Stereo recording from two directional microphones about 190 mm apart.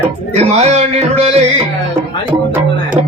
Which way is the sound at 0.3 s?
35° right (ahead or behind).